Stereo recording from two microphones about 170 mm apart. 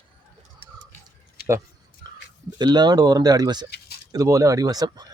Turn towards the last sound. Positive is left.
turn(degrees=-20)  # may be behind; listen again after turning